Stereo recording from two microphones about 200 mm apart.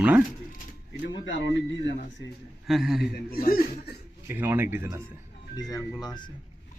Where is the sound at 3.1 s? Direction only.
45° left (ahead or behind).